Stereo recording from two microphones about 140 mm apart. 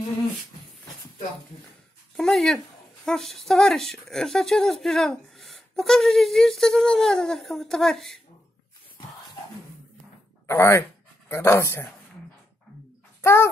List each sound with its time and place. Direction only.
2.1 s speech: centre (ahead or behind)
10.4 s speech: 15° left (ahead or behind)
13.2 s a child's voice: 20° left (ahead or behind)